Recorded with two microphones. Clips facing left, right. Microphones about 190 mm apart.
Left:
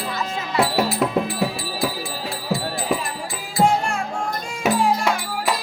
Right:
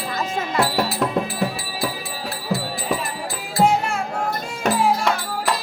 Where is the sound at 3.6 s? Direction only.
Centre (ahead or behind).